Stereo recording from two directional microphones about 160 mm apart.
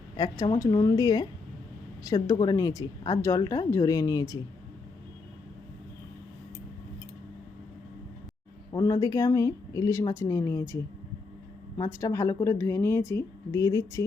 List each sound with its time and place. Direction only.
0.2 s speech: 20° left (ahead or behind)
8.7 s speech: 20° left (ahead or behind)
11.8 s a woman's voice: 20° left (ahead or behind)